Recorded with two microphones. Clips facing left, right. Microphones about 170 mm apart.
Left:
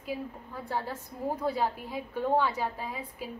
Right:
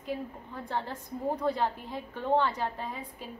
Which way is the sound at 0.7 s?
5° left (ahead or behind).